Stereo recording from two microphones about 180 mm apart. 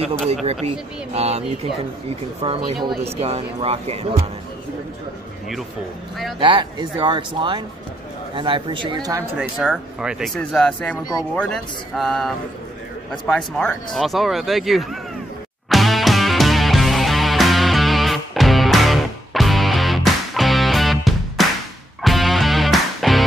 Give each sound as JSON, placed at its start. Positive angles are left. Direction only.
{"t": 0.3, "sound": "speech", "side_deg": -35}
{"t": 6.4, "sound": "speech", "side_deg": -25}
{"t": 9.4, "sound": "speech", "side_deg": -5}
{"t": 13.3, "sound": "speech", "side_deg": 0}
{"t": 15.7, "sound": "music", "side_deg": 0}